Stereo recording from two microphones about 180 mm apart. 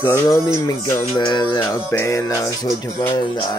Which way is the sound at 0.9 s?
20° left (ahead or behind).